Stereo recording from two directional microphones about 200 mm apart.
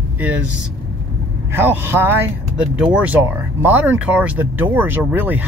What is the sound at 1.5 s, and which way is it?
Speech, 10° right (ahead or behind).